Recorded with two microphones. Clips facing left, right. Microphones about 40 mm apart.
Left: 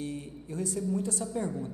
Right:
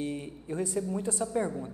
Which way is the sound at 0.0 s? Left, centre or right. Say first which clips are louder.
Right 2 dB; right.